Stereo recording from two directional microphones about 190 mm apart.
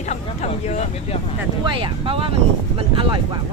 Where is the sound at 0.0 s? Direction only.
35° left (ahead or behind).